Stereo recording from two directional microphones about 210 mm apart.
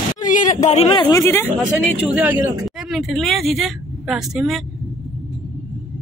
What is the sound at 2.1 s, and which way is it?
Speech, 10° right (ahead or behind).